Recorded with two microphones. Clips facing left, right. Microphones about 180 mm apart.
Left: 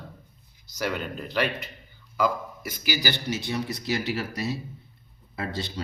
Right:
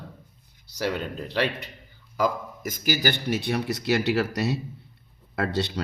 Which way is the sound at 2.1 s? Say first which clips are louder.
Even; 45° right (ahead or behind).